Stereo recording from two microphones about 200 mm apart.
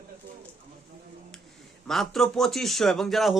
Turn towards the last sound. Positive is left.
turn(degrees=0)  # may be behind; listen again after turning